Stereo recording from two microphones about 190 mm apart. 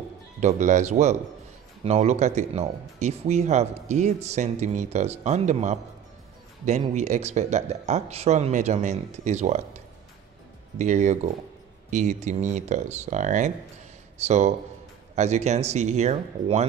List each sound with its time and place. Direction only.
0.4 s speech: 40° right (ahead or behind)
6.8 s speech: 35° right (ahead or behind)